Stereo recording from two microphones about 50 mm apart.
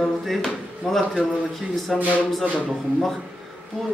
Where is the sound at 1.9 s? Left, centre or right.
Right.